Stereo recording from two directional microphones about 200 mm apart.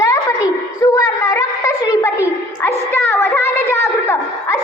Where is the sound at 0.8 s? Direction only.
15° left (ahead or behind).